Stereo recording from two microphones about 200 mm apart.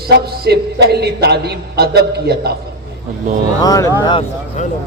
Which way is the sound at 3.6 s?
20° left (ahead or behind).